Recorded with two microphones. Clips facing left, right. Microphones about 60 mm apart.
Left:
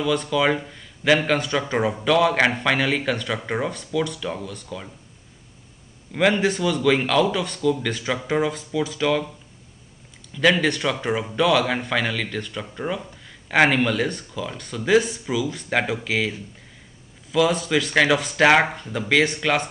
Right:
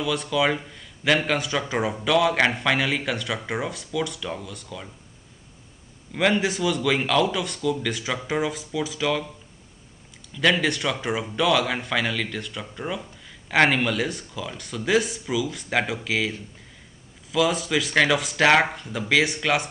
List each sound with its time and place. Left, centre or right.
0.0 s speech: centre
6.1 s speech: centre
10.3 s speech: centre